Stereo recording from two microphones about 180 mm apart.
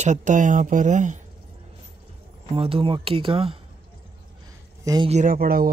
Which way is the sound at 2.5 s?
30° right (ahead or behind).